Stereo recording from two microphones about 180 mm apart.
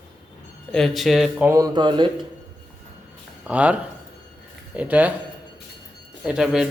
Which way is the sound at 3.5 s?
5° right (ahead or behind).